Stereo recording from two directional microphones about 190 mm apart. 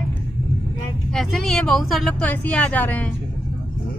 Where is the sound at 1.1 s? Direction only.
Centre (ahead or behind).